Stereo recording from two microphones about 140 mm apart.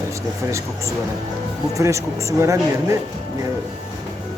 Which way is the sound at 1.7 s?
20° right (ahead or behind).